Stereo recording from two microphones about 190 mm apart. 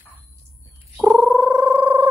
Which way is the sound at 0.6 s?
15° right (ahead or behind).